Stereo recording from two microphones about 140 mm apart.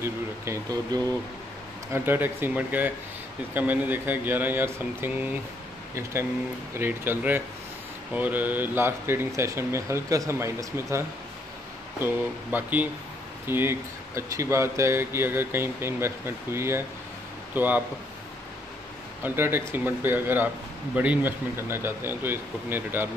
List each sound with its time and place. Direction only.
0.0 s speech: 25° right (ahead or behind)
6.7 s speech: 15° right (ahead or behind)
19.2 s speech: 15° right (ahead or behind)